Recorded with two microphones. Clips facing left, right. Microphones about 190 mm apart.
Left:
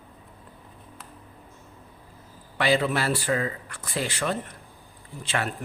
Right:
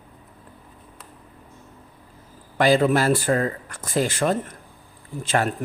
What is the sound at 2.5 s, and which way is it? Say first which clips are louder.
Speech: right 6 dB; 45° right (ahead or behind).